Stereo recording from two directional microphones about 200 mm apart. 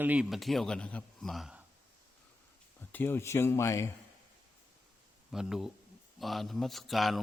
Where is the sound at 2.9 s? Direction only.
10° left (ahead or behind).